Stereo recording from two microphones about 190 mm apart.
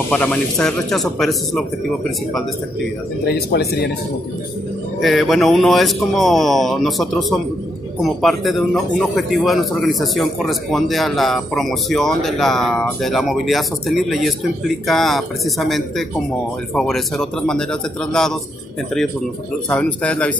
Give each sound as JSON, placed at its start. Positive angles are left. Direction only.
{"t": 0.1, "sound": "a man's voice", "side_deg": 5}
{"t": 3.3, "sound": "speech", "side_deg": 55}
{"t": 5.0, "sound": "a man's voice", "side_deg": 0}
{"t": 19.7, "sound": "a man's voice", "side_deg": 5}